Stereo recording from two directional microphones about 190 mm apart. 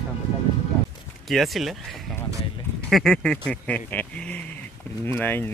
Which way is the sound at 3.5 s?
10° left (ahead or behind).